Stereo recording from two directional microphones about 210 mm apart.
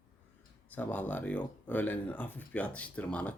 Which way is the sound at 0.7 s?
10° left (ahead or behind).